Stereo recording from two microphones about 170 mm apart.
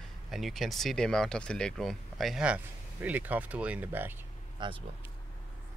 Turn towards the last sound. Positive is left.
turn(degrees=-25)  # may be behind; listen again after turning